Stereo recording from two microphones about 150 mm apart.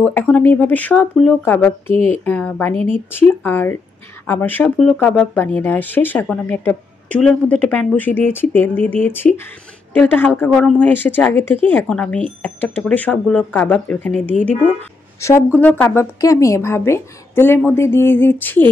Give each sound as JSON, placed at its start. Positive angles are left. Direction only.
{"t": 0.0, "sound": "a woman's voice", "side_deg": 10}